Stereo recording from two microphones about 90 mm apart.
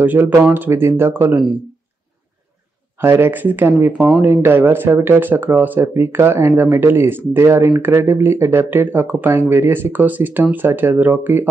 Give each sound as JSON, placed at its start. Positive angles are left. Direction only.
{"t": 0.0, "sound": "speech", "side_deg": -20}
{"t": 3.0, "sound": "speech", "side_deg": -25}